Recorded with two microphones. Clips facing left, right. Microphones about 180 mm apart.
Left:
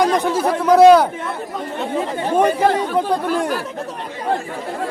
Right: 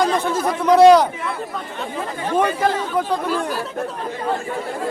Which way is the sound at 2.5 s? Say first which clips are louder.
Left 4 dB; 30° left (ahead or behind).